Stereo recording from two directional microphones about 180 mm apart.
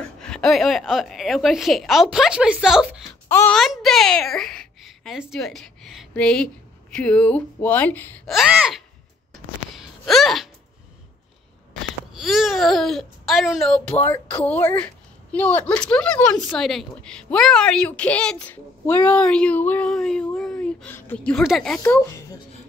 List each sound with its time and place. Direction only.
0.0 s speech: 5° left (ahead or behind)
3.3 s speech: 15° left (ahead or behind)
3.5 s a woman's voice: centre (ahead or behind)
8.3 s speech: 5° right (ahead or behind)
9.3 s a sound: centre (ahead or behind)
12.1 s a woman's voice: centre (ahead or behind); by 22.4 s 15° left (ahead or behind)